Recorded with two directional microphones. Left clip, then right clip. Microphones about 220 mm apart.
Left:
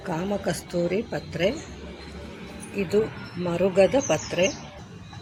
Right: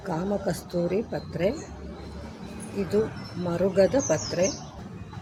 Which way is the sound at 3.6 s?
5° left (ahead or behind).